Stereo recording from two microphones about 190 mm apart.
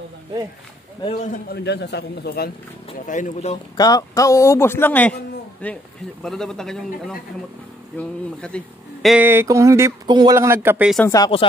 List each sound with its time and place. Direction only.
1.3 s a man's voice: 60° left (ahead or behind)
3.1 s speech: 40° left (ahead or behind)
3.7 s a man's voice: 20° left (ahead or behind); by 9.1 s 5° left (ahead or behind)
9.1 s speech: 10° right (ahead or behind)
11.1 s speech: 20° left (ahead or behind)